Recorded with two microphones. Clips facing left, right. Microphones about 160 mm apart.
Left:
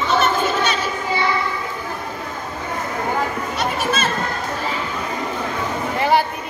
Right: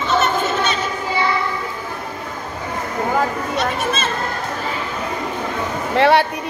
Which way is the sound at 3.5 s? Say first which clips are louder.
Even; centre (ahead or behind).